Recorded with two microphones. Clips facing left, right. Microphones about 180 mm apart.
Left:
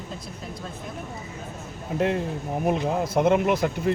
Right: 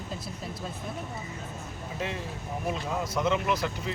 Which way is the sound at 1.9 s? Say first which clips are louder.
Left 11 dB; 60° left (ahead or behind).